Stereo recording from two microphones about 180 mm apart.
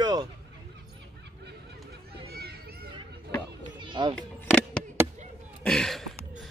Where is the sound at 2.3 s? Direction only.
60° right (ahead or behind).